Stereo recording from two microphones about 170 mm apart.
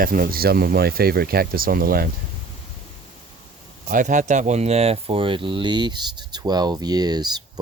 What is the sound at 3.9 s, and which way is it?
Speech, 50° right (ahead or behind).